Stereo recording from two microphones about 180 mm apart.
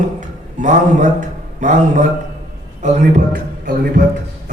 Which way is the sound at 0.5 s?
45° right (ahead or behind).